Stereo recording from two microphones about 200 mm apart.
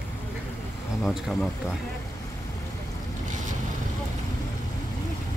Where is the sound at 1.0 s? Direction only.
Centre (ahead or behind).